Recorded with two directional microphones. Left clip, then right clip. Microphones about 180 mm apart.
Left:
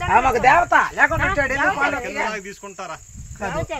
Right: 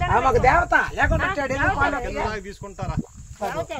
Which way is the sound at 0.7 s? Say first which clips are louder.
Left 4 dB; 10° left (ahead or behind).